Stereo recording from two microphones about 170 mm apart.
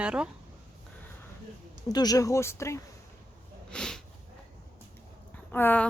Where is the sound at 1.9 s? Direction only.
20° left (ahead or behind).